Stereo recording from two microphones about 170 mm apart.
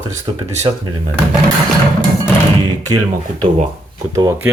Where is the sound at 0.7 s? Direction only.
20° right (ahead or behind).